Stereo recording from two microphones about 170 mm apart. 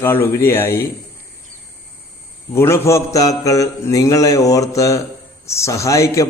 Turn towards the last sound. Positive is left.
turn(degrees=20)  # may be behind; listen again after turning